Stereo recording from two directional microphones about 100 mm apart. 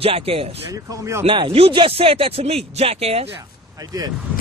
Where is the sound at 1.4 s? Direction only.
70° right (ahead or behind); by 3.2 s 85° right.